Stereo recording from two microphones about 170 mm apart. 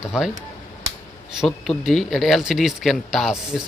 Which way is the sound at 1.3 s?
Centre (ahead or behind).